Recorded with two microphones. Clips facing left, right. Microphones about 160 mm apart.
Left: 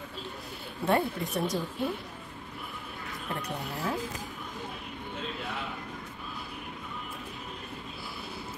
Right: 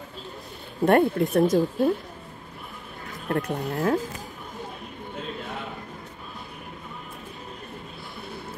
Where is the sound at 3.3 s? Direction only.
55° right (ahead or behind).